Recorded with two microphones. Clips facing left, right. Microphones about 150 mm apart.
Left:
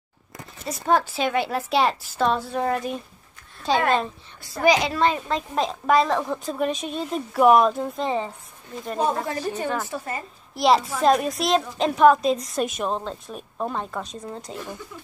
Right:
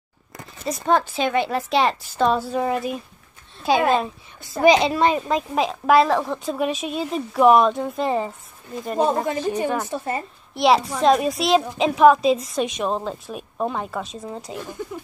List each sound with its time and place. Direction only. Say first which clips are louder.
0.7 s a child's voice: right 2 dB; 5° left (ahead or behind)
4.4 s a woman's voice: right 4 dB; 20° right (ahead or behind)
5.5 s a child's voice: right 3 dB; 5° right (ahead or behind)
9.0 s a woman's voice: right 3 dB; 20° right (ahead or behind)
10.5 s a child's voice: right 2 dB; centre (ahead or behind)